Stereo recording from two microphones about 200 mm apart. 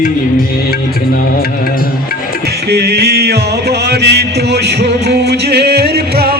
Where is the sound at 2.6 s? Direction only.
55° right (ahead or behind).